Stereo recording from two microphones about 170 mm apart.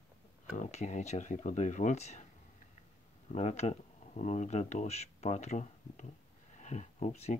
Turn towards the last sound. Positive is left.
turn(degrees=40)  # may be behind; listen again after turning